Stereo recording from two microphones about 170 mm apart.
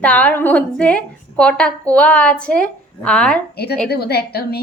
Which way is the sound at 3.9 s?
70° left (ahead or behind).